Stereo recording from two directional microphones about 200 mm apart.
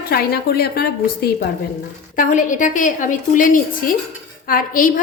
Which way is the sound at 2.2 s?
40° left (ahead or behind).